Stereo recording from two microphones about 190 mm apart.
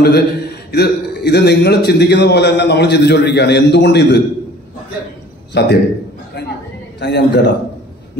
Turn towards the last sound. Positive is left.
turn(degrees=65)  # may be behind; listen again after turning